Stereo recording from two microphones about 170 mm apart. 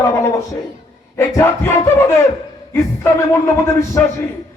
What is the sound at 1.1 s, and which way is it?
A man's voice, 15° left (ahead or behind).